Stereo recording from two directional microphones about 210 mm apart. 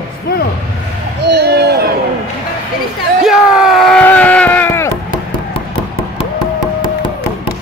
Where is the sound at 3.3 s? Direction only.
Centre (ahead or behind).